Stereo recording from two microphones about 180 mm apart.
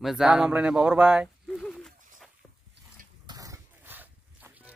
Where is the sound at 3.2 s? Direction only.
20° right (ahead or behind).